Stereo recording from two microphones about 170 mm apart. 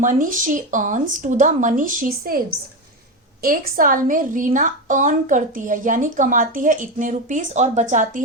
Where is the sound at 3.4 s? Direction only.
55° right (ahead or behind).